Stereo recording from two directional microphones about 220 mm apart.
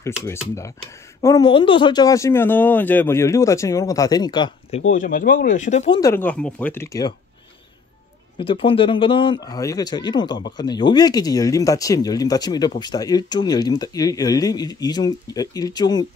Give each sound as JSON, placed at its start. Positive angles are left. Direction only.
{"t": 0.2, "sound": "a man's voice", "side_deg": 15}
{"t": 4.9, "sound": "speech", "side_deg": 40}
{"t": 5.9, "sound": "a man's voice", "side_deg": 10}
{"t": 8.4, "sound": "a man's voice", "side_deg": 25}